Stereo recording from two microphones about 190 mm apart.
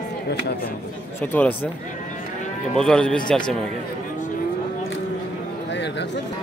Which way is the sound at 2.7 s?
5° left (ahead or behind).